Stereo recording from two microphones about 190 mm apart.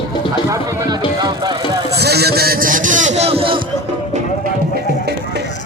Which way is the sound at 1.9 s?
55° right (ahead or behind).